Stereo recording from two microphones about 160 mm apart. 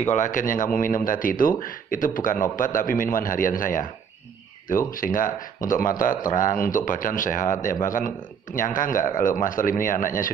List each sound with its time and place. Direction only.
0.1 s speech: 55° left (ahead or behind)